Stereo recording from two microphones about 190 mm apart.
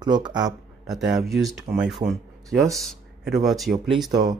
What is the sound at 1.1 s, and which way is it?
Speech, centre (ahead or behind).